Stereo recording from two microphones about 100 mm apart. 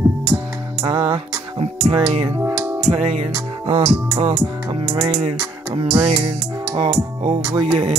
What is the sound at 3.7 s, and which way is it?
Music, 55° right (ahead or behind).